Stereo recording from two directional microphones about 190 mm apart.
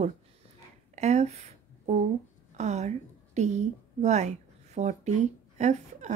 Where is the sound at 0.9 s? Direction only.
35° right (ahead or behind).